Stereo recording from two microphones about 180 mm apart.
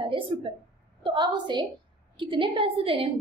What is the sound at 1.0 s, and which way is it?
A woman's voice, 25° right (ahead or behind).